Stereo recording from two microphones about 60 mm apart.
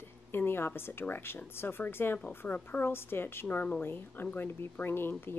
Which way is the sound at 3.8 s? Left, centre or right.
Left.